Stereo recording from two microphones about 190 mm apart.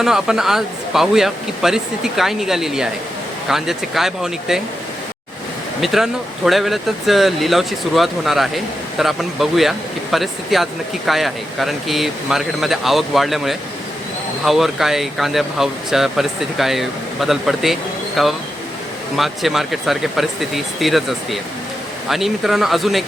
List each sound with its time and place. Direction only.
0.0 s speech: centre (ahead or behind)
5.8 s speech: centre (ahead or behind)